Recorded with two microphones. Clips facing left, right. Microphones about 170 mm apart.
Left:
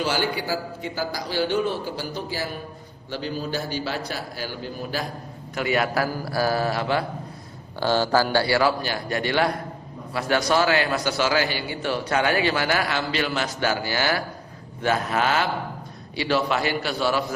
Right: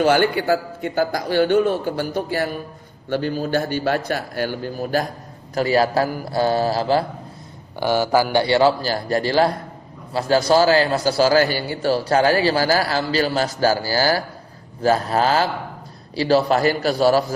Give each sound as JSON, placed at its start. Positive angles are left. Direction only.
{"t": 0.0, "sound": "a man's voice", "side_deg": -55}
{"t": 5.5, "sound": "a man's voice", "side_deg": -35}
{"t": 7.8, "sound": "a man's voice", "side_deg": -15}